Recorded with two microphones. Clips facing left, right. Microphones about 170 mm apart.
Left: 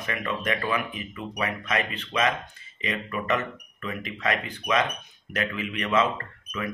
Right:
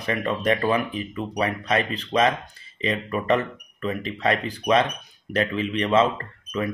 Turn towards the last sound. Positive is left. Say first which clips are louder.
# right 6 dB
turn(degrees=-30)  # may be behind; listen again after turning